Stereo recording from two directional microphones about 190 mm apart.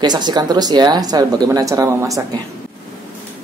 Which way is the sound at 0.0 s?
20° right (ahead or behind).